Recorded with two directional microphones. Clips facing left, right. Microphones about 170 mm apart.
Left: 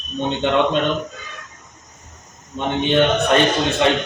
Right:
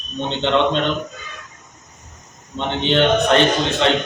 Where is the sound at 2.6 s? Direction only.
10° left (ahead or behind).